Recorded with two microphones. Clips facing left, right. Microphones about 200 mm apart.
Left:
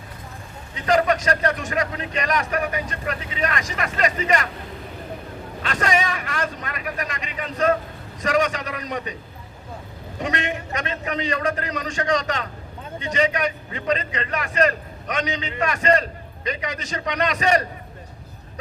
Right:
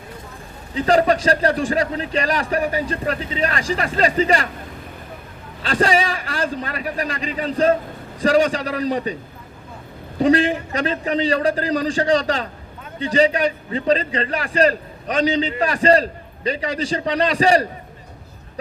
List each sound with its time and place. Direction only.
0.7 s a man's voice: 30° right (ahead or behind)
5.6 s a man's voice: 30° right (ahead or behind)
10.2 s a man's voice: 30° right (ahead or behind)